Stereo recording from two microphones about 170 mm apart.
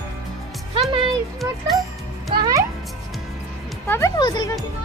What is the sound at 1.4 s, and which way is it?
Speech, centre (ahead or behind).